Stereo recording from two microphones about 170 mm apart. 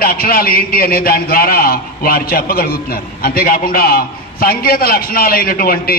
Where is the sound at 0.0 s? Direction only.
60° left (ahead or behind).